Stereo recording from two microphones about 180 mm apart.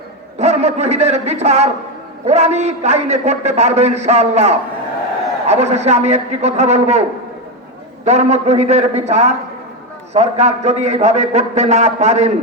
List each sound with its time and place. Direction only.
0.3 s a man's voice: 40° right (ahead or behind)
8.0 s a man's voice: 40° right (ahead or behind)